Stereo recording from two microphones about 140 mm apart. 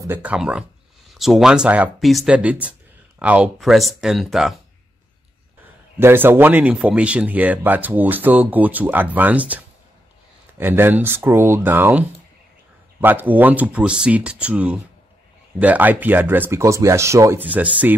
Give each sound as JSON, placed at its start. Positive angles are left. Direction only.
{"t": 0.0, "sound": "speech", "side_deg": -15}
{"t": 5.9, "sound": "speech", "side_deg": -15}
{"t": 10.6, "sound": "speech", "side_deg": -15}
{"t": 13.0, "sound": "speech", "side_deg": -15}